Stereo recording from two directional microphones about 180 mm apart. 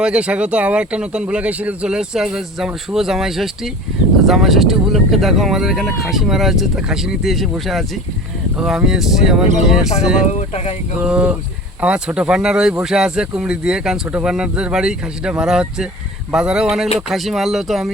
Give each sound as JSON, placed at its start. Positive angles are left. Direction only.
{"t": 0.0, "sound": "speech", "side_deg": -5}
{"t": 8.5, "sound": "speech", "side_deg": 0}
{"t": 10.3, "sound": "speech", "side_deg": 35}
{"t": 11.0, "sound": "speech", "side_deg": -5}